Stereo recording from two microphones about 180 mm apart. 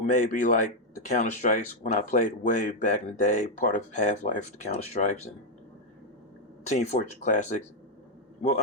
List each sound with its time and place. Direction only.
0.0 s speech: 45° left (ahead or behind)
6.7 s a man's voice: 40° left (ahead or behind)